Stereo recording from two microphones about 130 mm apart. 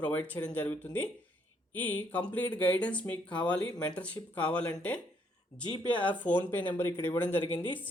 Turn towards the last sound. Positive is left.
turn(degrees=15)  # may be behind; listen again after turning